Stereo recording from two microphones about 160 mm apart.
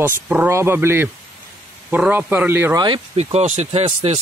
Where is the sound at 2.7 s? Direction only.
25° right (ahead or behind).